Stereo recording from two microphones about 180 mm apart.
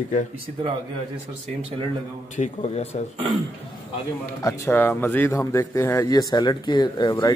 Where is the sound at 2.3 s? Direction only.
35° left (ahead or behind).